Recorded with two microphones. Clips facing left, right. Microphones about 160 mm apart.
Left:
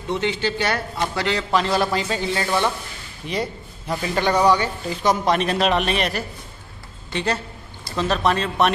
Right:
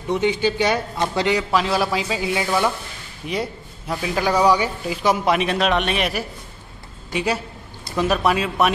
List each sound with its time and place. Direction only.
0.1 s speech: 15° right (ahead or behind)
1.5 s a man's voice: centre (ahead or behind)